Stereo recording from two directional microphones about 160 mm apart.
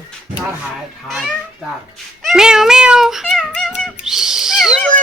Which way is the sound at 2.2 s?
5° right (ahead or behind).